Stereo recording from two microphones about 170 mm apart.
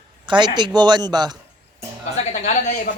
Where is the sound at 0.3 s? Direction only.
25° right (ahead or behind).